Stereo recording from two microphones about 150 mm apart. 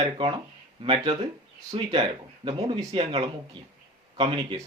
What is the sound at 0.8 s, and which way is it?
Speech, 40° right (ahead or behind).